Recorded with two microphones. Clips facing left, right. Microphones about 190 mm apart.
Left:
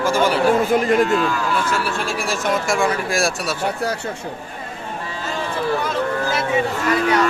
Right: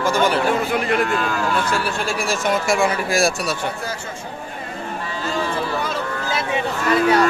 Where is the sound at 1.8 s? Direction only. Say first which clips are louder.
Even; centre (ahead or behind).